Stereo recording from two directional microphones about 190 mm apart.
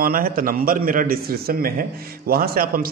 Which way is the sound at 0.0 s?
50° right (ahead or behind).